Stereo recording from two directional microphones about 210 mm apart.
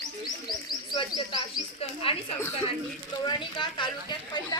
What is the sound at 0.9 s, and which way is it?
Speech, 25° left (ahead or behind).